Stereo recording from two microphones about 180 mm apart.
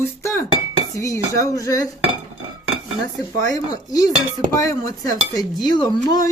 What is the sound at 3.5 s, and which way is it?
Speech, 20° left (ahead or behind).